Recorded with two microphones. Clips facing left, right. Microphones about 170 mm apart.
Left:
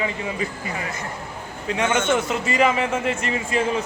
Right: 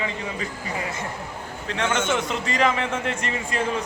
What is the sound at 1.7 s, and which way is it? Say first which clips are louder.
A man's voice: left 3 dB; 10° left (ahead or behind).